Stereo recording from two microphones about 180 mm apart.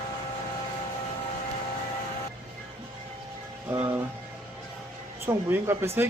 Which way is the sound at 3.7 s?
10° right (ahead or behind).